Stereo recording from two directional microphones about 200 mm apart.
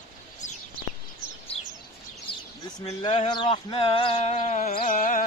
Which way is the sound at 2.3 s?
25° left (ahead or behind).